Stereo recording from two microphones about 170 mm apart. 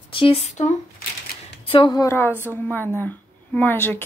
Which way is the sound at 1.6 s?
30° left (ahead or behind).